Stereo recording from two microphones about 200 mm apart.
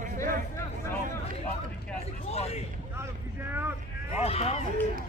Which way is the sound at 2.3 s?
30° left (ahead or behind).